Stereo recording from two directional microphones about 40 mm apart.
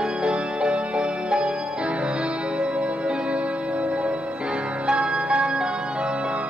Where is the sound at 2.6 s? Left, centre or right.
Right.